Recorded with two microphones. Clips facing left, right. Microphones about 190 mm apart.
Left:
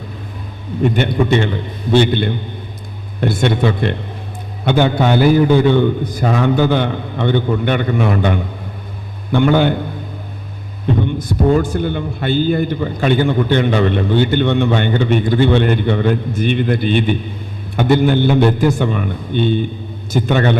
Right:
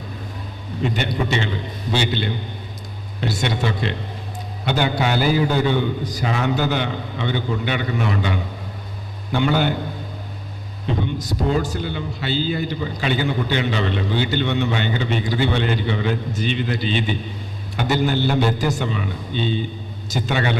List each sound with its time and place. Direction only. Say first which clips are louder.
0.8 s a man's voice: left 7 dB; 55° left (ahead or behind)
11.0 s a man's voice: left 7 dB; 55° left (ahead or behind)